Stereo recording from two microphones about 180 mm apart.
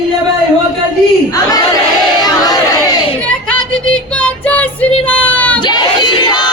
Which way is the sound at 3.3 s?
5° left (ahead or behind).